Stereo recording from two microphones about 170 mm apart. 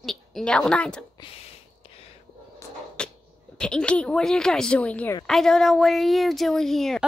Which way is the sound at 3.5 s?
5° left (ahead or behind).